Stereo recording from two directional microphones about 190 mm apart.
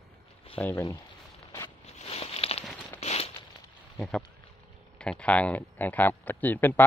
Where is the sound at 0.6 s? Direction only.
10° left (ahead or behind).